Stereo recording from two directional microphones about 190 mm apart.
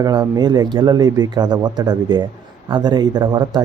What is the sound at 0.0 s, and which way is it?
Speech, 20° right (ahead or behind).